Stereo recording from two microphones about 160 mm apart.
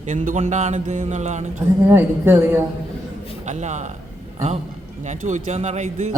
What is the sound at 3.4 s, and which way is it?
A man's voice, 45° right (ahead or behind).